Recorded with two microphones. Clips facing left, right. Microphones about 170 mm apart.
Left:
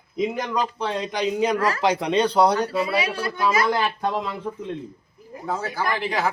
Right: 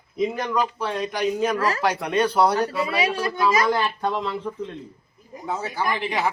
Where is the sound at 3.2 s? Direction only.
15° right (ahead or behind).